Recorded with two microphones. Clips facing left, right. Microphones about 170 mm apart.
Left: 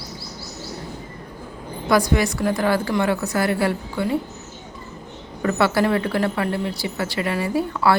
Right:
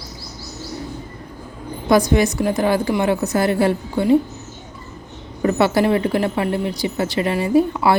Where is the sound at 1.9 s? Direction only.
20° right (ahead or behind).